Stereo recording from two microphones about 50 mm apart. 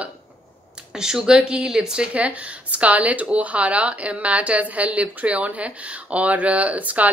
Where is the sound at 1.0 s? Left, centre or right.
Centre.